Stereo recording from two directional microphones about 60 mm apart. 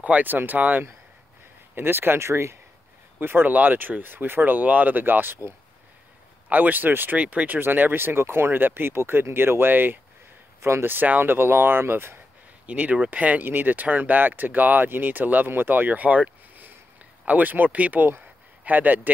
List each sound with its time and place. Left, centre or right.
0.0 s speech: right
1.8 s speech: right
3.2 s speech: right
6.5 s speech: right
10.6 s speech: right
10.9 s speech: right
12.6 s a man's voice: right